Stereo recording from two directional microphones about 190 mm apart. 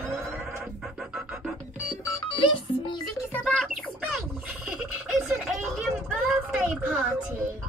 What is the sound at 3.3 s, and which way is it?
Music, centre (ahead or behind).